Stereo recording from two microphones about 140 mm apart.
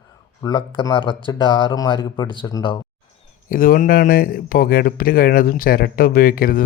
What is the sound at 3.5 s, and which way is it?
Speech, 85° left.